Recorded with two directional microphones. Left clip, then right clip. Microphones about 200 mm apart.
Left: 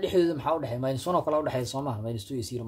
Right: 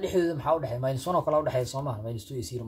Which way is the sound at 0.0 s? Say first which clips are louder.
Left 2 dB; 45° left (ahead or behind).